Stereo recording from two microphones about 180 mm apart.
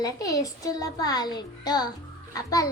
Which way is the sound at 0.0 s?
20° left (ahead or behind).